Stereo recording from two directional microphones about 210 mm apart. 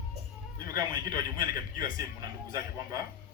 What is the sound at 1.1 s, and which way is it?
Speech, 40° left (ahead or behind).